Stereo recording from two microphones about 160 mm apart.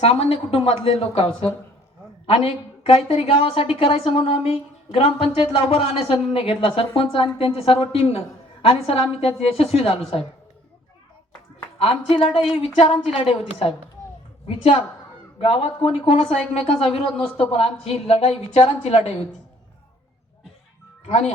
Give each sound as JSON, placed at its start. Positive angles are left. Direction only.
{"t": 0.0, "sound": "a woman's voice", "side_deg": 40}
{"t": 11.8, "sound": "a woman's voice", "side_deg": 35}
{"t": 21.1, "sound": "a woman's voice", "side_deg": 40}